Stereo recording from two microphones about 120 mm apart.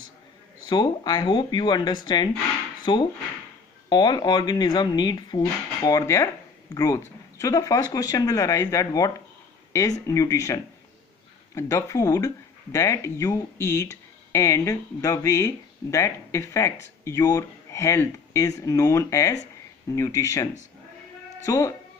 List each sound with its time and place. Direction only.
0.7 s speech: 35° left (ahead or behind)
9.7 s a sound: 30° left (ahead or behind)
10.0 s speech: 25° left (ahead or behind)
21.5 s speech: 25° left (ahead or behind)